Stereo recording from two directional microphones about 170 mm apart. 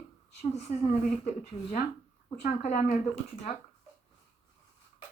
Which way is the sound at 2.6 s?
40° left (ahead or behind).